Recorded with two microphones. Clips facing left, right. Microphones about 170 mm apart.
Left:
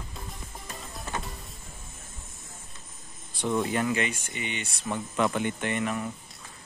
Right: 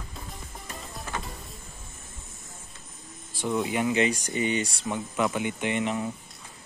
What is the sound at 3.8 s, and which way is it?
Speech, 20° right (ahead or behind).